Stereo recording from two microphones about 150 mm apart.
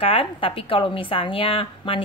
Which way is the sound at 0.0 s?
35° left (ahead or behind).